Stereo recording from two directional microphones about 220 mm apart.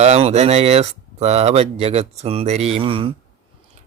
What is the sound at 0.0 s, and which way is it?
Speech, 30° right (ahead or behind).